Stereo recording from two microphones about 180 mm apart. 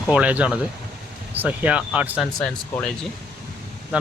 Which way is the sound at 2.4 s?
5° left (ahead or behind).